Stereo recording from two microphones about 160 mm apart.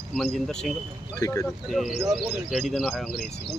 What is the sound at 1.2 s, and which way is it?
Speech, 20° left (ahead or behind).